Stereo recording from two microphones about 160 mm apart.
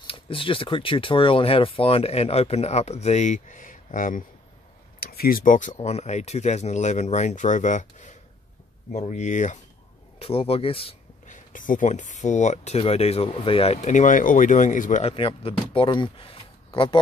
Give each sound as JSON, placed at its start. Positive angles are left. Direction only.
{"t": 0.0, "sound": "speech", "side_deg": 35}
{"t": 5.0, "sound": "speech", "side_deg": 70}
{"t": 10.1, "sound": "speech", "side_deg": 35}
{"t": 11.2, "sound": "speech", "side_deg": 55}
{"t": 15.1, "sound": "speech", "side_deg": 35}